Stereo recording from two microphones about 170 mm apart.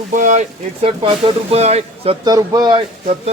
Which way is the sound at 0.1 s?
50° right (ahead or behind).